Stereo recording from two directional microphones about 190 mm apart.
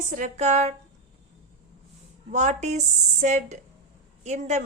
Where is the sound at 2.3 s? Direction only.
40° right (ahead or behind).